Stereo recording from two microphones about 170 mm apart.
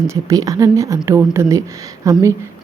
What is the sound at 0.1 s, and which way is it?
A woman's voice, 20° right (ahead or behind).